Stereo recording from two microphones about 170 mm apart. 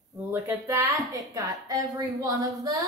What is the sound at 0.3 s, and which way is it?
A woman's voice, 15° right (ahead or behind).